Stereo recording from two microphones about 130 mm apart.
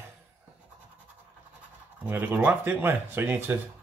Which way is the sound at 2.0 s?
15° right (ahead or behind).